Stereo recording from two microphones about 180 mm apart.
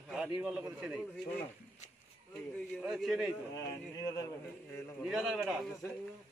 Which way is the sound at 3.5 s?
20° left (ahead or behind).